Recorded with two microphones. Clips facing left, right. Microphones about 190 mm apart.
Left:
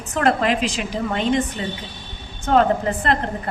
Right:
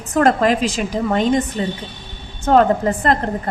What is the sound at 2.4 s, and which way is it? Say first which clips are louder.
Speech: right 3 dB; 40° right (ahead or behind).